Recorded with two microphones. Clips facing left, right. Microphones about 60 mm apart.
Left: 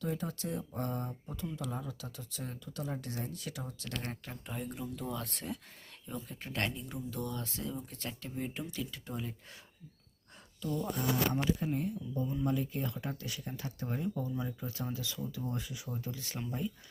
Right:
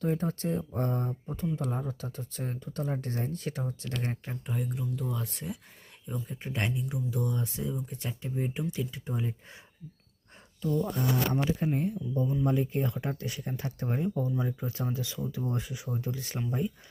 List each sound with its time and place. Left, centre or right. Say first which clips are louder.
0.0 s speech: right 7 dB; right
4.4 s speech: right 5 dB; centre
6.1 s speech: right 5 dB; centre
10.6 s speech: right 5 dB; right